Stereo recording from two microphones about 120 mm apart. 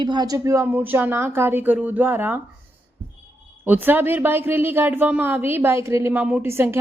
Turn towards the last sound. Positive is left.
turn(degrees=-20)  # may be behind; listen again after turning